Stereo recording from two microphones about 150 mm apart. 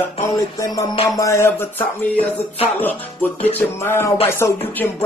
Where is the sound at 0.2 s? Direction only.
20° left (ahead or behind).